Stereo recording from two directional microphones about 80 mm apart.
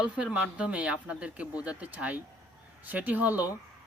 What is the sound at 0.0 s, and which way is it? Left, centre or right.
Speech, centre.